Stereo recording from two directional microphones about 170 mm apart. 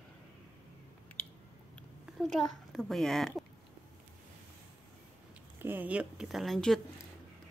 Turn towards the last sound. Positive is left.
turn(degrees=0)  # may be behind; listen again after turning